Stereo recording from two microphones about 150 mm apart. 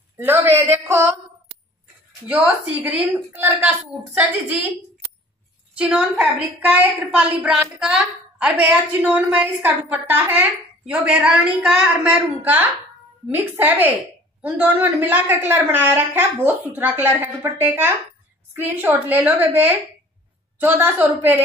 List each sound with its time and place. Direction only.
0.2 s a woman's voice: 15° right (ahead or behind)
2.2 s a woman's voice: 10° right (ahead or behind)
5.8 s a woman's voice: 5° right (ahead or behind)